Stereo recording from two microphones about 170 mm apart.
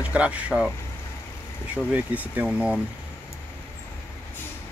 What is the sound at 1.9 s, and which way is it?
Speech, 10° right (ahead or behind).